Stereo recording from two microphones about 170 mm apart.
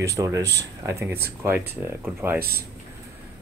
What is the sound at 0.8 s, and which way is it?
Speech, 15° right (ahead or behind).